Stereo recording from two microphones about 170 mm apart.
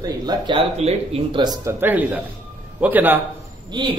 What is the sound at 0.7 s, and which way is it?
Speech, 35° right (ahead or behind).